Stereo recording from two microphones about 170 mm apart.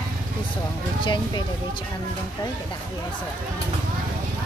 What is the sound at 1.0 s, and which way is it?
Speech, 30° left (ahead or behind).